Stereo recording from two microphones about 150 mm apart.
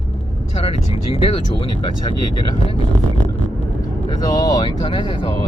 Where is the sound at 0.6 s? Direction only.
40° left (ahead or behind).